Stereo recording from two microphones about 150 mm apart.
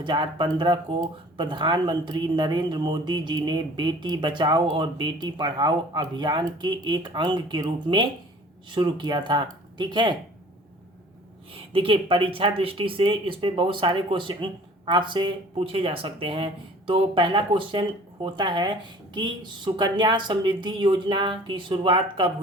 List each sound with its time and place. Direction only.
0.0 s speech: 30° right (ahead or behind)
11.5 s speech: 40° right (ahead or behind)